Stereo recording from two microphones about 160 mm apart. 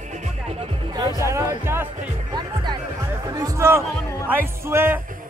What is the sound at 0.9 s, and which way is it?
Music, 25° right (ahead or behind).